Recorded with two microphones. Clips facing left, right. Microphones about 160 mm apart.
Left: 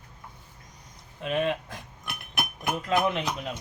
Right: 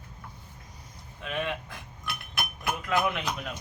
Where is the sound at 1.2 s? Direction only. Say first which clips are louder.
Left 6 dB; 35° left (ahead or behind).